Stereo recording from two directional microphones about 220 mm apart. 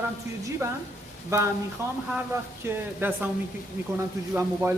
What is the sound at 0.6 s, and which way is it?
Speech, 15° right (ahead or behind).